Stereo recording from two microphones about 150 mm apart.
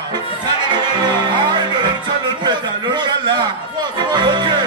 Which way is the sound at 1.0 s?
30° right (ahead or behind).